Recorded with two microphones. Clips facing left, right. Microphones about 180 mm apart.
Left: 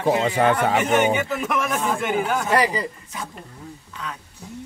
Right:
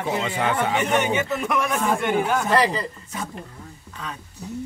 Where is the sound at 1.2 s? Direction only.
Centre (ahead or behind).